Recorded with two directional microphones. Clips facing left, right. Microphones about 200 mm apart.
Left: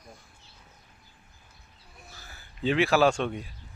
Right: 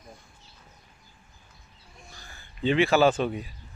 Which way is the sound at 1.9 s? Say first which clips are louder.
Right 1 dB; 5° left (ahead or behind).